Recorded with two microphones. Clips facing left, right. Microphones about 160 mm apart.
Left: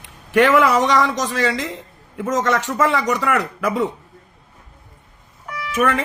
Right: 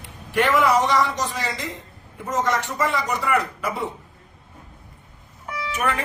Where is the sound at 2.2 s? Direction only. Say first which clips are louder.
Left 4 dB; 85° left.